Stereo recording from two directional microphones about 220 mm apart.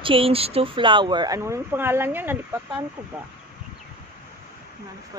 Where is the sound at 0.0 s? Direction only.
25° right (ahead or behind).